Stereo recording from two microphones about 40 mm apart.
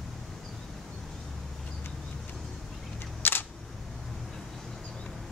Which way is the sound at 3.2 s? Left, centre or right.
Left.